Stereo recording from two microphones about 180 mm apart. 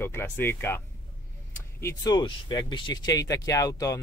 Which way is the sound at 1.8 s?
15° left (ahead or behind).